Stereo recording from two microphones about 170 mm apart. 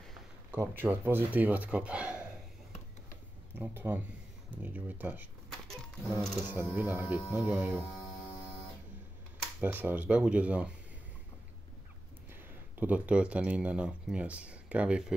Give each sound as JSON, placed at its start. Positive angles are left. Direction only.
{"t": 0.5, "sound": "speech", "side_deg": -10}
{"t": 3.5, "sound": "speech", "side_deg": -15}
{"t": 6.5, "sound": "speech", "side_deg": -10}
{"t": 7.2, "sound": "speech", "side_deg": 15}
{"t": 7.4, "sound": "speech", "side_deg": -10}
{"t": 9.6, "sound": "speech", "side_deg": -10}
{"t": 12.3, "sound": "speech", "side_deg": -10}